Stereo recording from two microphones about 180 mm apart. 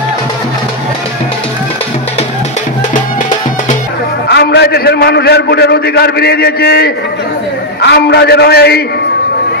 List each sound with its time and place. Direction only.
4.3 s a man's voice: 65° left (ahead or behind)